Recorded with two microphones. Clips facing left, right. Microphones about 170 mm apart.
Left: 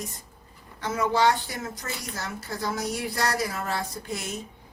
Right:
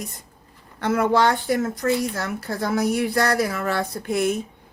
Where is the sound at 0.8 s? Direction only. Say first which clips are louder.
Right 5 dB; 60° right (ahead or behind).